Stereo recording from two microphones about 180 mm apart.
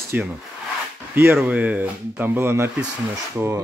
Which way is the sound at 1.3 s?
10° right (ahead or behind).